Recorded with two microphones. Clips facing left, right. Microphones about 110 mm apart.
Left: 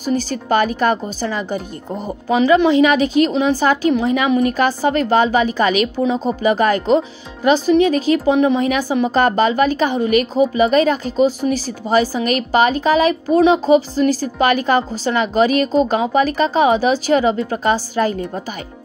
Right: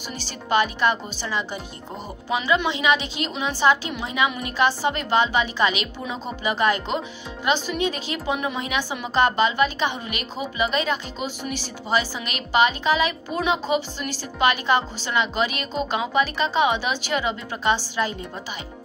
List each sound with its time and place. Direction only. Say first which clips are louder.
0.0 s a woman's voice: left 15 dB; 45° left (ahead or behind)